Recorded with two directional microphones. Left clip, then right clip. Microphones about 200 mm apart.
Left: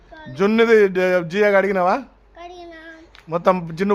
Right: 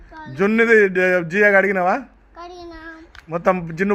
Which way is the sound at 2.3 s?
30° right (ahead or behind).